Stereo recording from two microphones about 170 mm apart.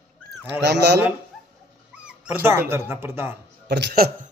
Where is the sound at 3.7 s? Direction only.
75° right (ahead or behind).